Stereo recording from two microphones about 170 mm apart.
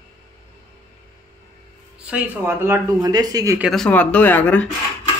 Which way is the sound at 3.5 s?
Centre (ahead or behind).